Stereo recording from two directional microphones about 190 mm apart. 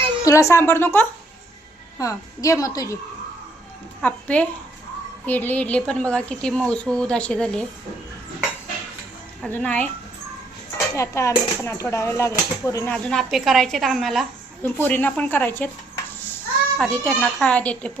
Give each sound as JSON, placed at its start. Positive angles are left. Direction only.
{"t": 0.3, "sound": "speech", "side_deg": 15}
{"t": 4.0, "sound": "a woman's voice", "side_deg": 5}
{"t": 9.4, "sound": "speech", "side_deg": 5}
{"t": 10.9, "sound": "speech", "side_deg": 15}
{"t": 16.7, "sound": "speech", "side_deg": 5}